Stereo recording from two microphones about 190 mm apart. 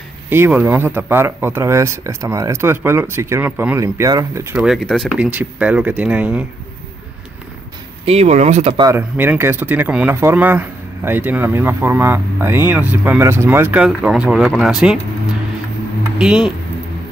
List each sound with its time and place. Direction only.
0.3 s speech: 10° right (ahead or behind)
4.6 s speech: centre (ahead or behind)
8.0 s speech: 35° right (ahead or behind)
8.7 s speech: 15° right (ahead or behind)
16.2 s speech: 5° right (ahead or behind)